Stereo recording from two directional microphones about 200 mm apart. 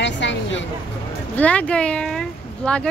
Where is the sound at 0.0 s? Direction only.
65° left (ahead or behind).